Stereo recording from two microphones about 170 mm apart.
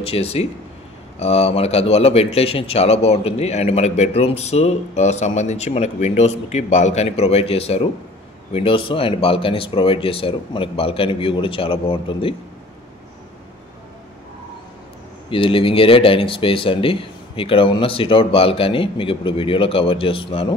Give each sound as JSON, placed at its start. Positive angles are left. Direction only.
{"t": 0.0, "sound": "speech", "side_deg": 35}
{"t": 15.2, "sound": "speech", "side_deg": 30}